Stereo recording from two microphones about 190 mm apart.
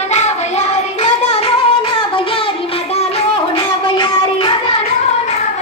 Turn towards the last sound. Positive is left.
turn(degrees=25)  # may be behind; listen again after turning